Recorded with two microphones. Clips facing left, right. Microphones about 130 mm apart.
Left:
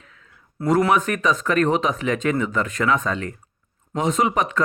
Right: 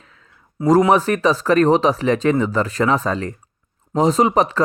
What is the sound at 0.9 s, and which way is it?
Speech, 35° right (ahead or behind).